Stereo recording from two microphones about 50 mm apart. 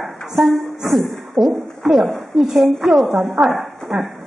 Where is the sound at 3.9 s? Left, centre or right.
Centre.